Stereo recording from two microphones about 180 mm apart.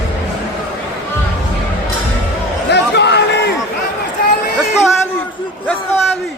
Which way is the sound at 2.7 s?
70° left (ahead or behind).